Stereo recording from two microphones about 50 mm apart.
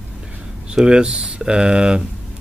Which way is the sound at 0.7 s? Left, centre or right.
Centre.